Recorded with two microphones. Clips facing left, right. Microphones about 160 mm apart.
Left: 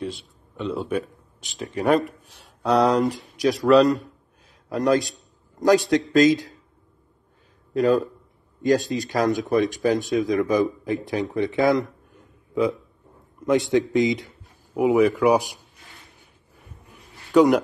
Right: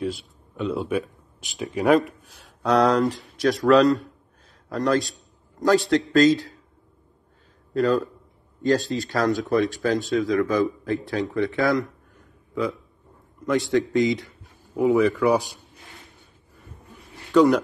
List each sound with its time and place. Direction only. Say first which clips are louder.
0.0 s a man's voice: right 3 dB; centre (ahead or behind)
4.6 s a man's voice: left 2 dB; 20° left (ahead or behind)
7.7 s a man's voice: left 2 dB; 20° left (ahead or behind)
11.3 s a sound: left 2 dB; 20° left (ahead or behind)
13.5 s a man's voice: left 2 dB; 20° left (ahead or behind)
17.3 s speech: left 1 dB; 15° left (ahead or behind)